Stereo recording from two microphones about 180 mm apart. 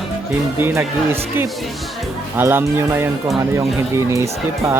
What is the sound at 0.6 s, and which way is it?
Speech, 15° right (ahead or behind).